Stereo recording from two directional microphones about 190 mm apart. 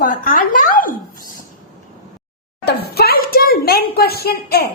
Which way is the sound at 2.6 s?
55° left (ahead or behind).